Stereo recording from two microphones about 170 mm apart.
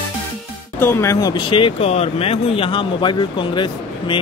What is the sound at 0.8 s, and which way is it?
Speech, 15° left (ahead or behind).